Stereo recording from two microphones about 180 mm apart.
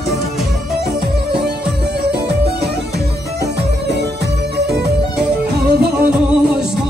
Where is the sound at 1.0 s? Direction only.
60° right (ahead or behind).